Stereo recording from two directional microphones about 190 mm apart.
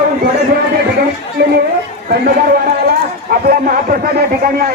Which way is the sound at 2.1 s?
55° right (ahead or behind).